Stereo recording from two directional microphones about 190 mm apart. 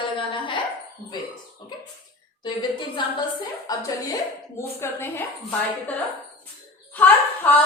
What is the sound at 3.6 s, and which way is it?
A woman's voice, 20° left (ahead or behind).